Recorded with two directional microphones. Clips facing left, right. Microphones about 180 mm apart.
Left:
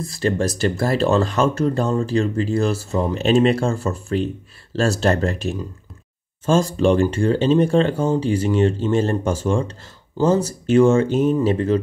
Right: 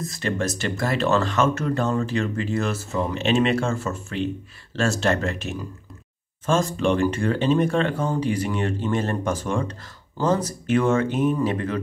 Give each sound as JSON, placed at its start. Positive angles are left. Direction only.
{"t": 0.0, "sound": "speech", "side_deg": 35}